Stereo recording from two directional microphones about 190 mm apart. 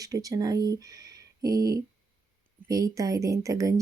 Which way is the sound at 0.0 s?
20° right (ahead or behind).